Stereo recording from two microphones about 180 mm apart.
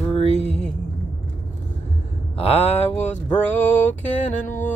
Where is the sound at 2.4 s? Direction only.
35° left (ahead or behind).